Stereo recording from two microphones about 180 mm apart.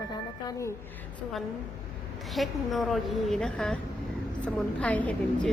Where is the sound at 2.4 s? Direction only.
Centre (ahead or behind).